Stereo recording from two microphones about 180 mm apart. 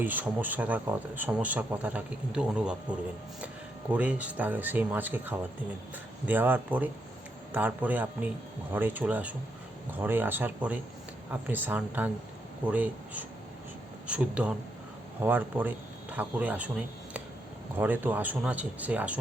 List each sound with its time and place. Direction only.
0.0 s speech: 10° right (ahead or behind)
3.9 s speech: 10° right (ahead or behind)
17.7 s speech: 10° right (ahead or behind)